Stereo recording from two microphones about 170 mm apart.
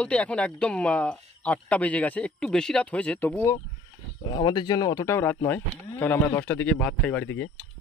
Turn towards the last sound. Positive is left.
turn(degrees=10)  # may be behind; listen again after turning